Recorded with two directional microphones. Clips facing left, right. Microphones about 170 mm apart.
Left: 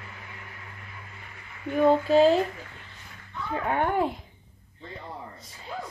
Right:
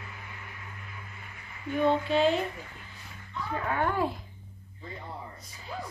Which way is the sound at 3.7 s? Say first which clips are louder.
Left 3 dB; 20° left (ahead or behind).